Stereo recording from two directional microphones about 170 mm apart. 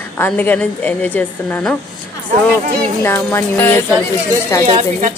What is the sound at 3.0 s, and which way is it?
A woman's voice, 15° left (ahead or behind).